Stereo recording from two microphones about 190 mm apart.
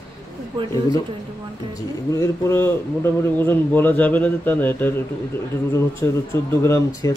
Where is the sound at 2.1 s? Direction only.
15° left (ahead or behind).